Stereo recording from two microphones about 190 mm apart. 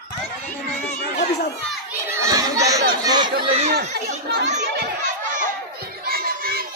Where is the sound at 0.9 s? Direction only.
40° left (ahead or behind).